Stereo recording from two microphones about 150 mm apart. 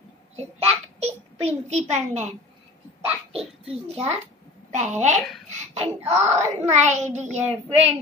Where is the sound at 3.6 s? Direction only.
40° right (ahead or behind).